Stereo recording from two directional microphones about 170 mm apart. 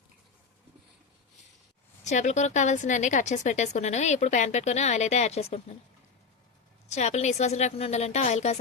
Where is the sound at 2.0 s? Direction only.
45° left (ahead or behind).